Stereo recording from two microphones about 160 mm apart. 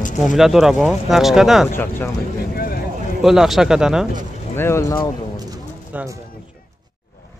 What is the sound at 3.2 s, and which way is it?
Speech, centre (ahead or behind).